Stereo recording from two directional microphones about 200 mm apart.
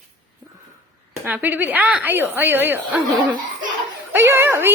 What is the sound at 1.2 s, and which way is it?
A woman's voice, 10° right (ahead or behind).